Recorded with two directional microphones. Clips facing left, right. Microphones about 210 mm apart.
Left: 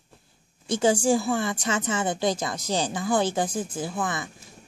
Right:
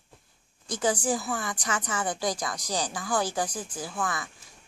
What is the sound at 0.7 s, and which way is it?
Speech, 25° left (ahead or behind).